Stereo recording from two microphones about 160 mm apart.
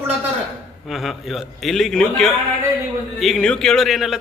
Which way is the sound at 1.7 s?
5° left (ahead or behind).